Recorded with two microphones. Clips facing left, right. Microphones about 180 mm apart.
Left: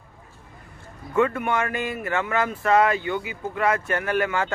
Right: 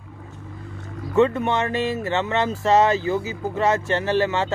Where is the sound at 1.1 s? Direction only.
25° right (ahead or behind).